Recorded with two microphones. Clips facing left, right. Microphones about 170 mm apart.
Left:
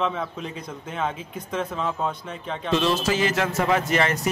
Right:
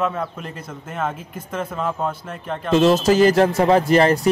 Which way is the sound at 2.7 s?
45° right (ahead or behind).